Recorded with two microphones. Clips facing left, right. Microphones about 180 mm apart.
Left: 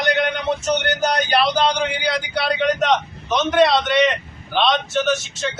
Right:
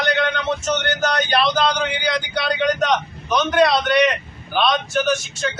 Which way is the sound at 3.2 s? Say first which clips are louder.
Left 1 dB; 25° left (ahead or behind).